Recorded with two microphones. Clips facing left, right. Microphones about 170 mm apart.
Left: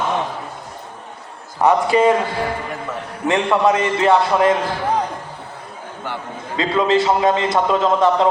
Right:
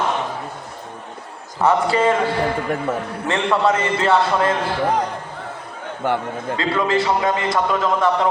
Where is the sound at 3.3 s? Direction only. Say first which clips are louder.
Left 2 dB; 15° left (ahead or behind).